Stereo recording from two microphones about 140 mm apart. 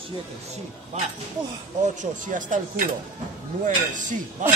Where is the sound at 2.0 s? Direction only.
65° right (ahead or behind).